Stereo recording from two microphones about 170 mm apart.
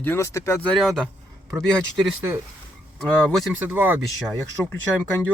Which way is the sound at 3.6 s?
10° right (ahead or behind).